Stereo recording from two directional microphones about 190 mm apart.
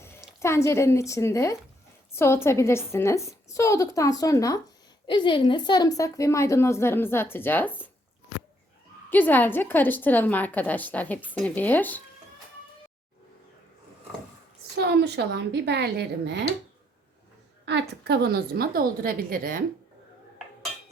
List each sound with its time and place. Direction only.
0.0 s a woman's voice: 15° left (ahead or behind)
9.0 s a woman's voice: 10° left (ahead or behind)
14.8 s a woman's voice: 60° right (ahead or behind)
17.7 s a woman's voice: 60° right (ahead or behind)